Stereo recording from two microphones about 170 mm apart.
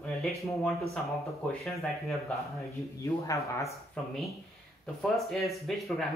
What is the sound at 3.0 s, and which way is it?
Speech, 20° left (ahead or behind).